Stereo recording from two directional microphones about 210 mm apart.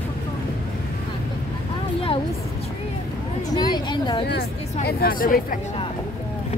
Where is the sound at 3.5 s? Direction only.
20° left (ahead or behind).